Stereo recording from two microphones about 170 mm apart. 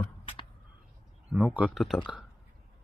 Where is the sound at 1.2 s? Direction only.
10° right (ahead or behind).